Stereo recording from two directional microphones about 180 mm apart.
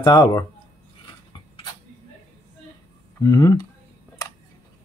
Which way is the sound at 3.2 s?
20° left (ahead or behind).